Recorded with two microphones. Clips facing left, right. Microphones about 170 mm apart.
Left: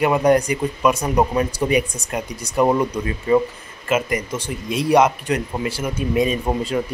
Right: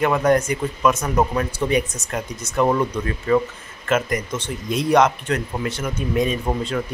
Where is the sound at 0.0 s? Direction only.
15° left (ahead or behind).